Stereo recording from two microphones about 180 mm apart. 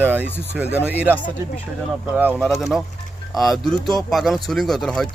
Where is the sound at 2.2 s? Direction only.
10° right (ahead or behind).